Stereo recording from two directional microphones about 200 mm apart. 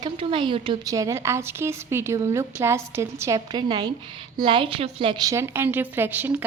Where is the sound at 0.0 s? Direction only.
25° right (ahead or behind).